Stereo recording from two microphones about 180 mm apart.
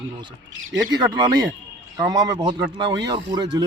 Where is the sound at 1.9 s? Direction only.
20° right (ahead or behind).